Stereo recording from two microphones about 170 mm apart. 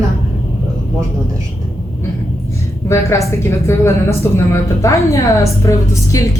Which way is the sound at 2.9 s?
15° left (ahead or behind).